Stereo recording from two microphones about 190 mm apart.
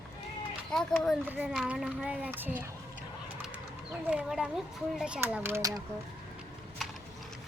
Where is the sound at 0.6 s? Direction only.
Centre (ahead or behind).